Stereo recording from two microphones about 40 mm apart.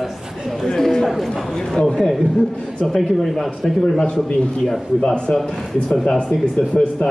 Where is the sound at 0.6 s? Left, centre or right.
Centre.